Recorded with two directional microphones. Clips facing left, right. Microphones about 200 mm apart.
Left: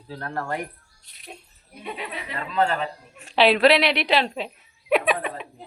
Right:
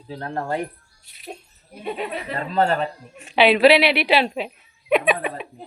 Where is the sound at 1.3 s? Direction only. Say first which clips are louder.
Right 6 dB; 35° right (ahead or behind).